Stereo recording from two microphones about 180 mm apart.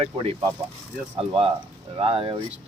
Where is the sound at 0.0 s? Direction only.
30° right (ahead or behind).